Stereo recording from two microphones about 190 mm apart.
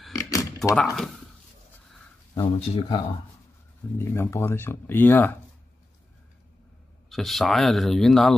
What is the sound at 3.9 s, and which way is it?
Speech, 15° left (ahead or behind).